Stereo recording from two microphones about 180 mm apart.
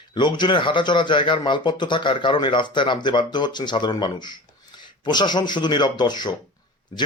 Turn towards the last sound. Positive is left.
turn(degrees=20)  # may be behind; listen again after turning